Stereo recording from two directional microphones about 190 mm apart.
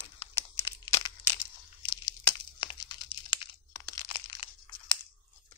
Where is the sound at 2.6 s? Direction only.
25° left (ahead or behind).